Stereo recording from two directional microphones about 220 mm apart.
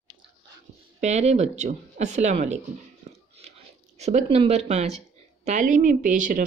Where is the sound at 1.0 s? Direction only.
30° right (ahead or behind).